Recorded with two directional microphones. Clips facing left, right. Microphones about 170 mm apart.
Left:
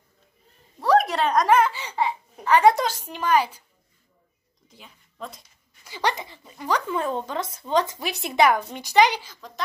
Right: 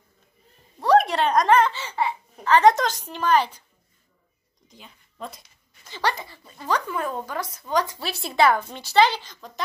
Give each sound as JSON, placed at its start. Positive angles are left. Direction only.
{"t": 0.8, "sound": "a child's voice", "side_deg": 0}
{"t": 4.6, "sound": "speech", "side_deg": 0}
{"t": 5.9, "sound": "speech", "side_deg": 15}